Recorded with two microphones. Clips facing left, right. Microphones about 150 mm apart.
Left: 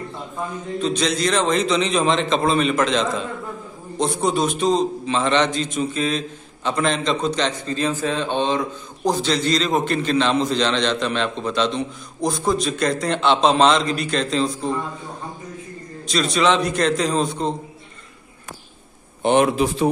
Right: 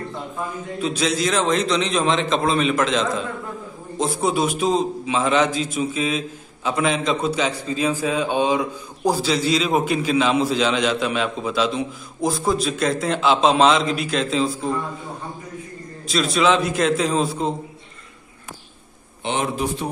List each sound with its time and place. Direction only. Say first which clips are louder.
0.7 s a man's voice: left 1 dB; 5° right (ahead or behind)
16.1 s a man's voice: even; centre (ahead or behind)
19.2 s speech: left 7 dB; 65° left (ahead or behind); by 19.9 s 90° left